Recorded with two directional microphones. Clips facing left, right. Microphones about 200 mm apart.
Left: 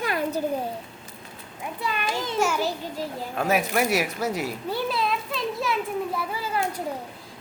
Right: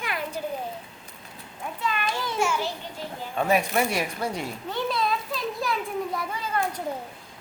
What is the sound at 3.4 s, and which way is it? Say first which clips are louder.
Speech: even; 5° left (ahead or behind).